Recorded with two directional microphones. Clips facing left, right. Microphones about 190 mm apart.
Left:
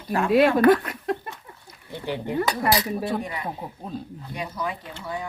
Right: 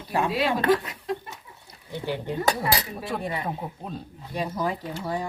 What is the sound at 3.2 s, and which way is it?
Speech, 30° right (ahead or behind).